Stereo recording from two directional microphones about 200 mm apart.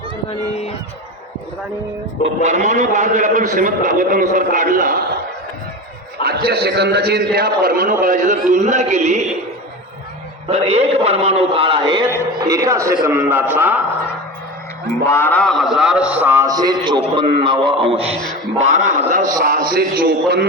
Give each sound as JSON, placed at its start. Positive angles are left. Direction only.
{"t": 0.3, "sound": "speech", "side_deg": 30}
{"t": 2.4, "sound": "a man's voice", "side_deg": -35}
{"t": 6.2, "sound": "a man's voice", "side_deg": -50}
{"t": 10.5, "sound": "a man's voice", "side_deg": -30}
{"t": 15.0, "sound": "a man's voice", "side_deg": 10}